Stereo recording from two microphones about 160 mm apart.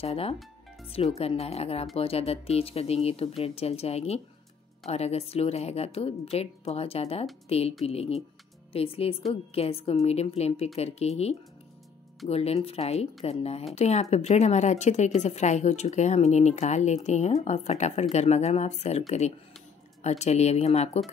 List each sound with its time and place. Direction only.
0.0 s a woman's voice: 40° left (ahead or behind)